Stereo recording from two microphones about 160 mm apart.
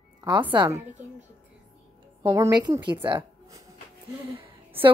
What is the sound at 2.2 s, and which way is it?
A woman's voice, 20° right (ahead or behind).